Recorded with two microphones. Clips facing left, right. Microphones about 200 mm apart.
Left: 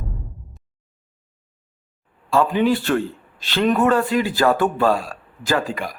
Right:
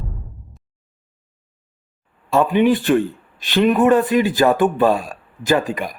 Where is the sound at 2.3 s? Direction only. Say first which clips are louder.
Right 3 dB; 20° right (ahead or behind).